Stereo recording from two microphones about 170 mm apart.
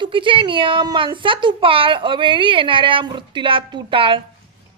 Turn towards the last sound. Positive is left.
turn(degrees=-30)  # may be behind; listen again after turning